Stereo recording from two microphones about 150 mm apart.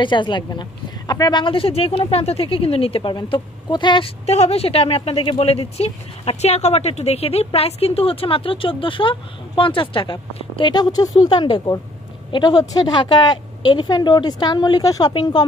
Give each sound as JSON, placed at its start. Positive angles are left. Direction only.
{"t": 0.0, "sound": "speech", "side_deg": 30}
{"t": 4.3, "sound": "a woman's voice", "side_deg": 45}